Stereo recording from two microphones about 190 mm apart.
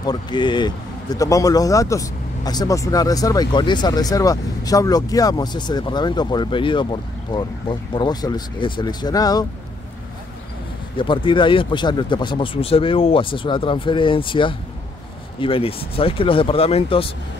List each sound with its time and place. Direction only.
0.0 s speech: 25° left (ahead or behind)
11.0 s speech: 25° left (ahead or behind)